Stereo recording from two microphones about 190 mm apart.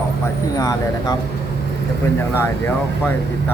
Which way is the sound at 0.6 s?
20° left (ahead or behind).